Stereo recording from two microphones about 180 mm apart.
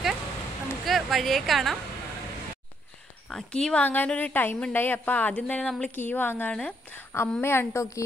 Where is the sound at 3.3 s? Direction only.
5° left (ahead or behind).